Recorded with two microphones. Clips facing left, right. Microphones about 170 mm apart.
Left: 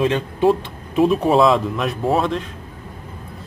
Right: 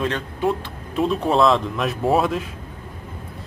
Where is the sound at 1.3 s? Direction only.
Centre (ahead or behind).